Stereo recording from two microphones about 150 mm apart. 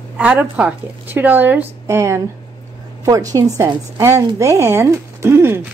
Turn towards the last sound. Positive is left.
turn(degrees=-15)  # may be behind; listen again after turning